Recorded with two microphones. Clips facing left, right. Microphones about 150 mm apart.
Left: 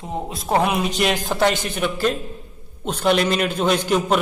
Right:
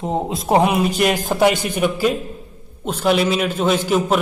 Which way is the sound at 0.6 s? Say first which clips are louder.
Right 3 dB; 5° right (ahead or behind).